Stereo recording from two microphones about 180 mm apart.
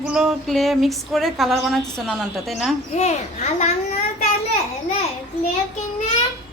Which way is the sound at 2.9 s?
40° left (ahead or behind).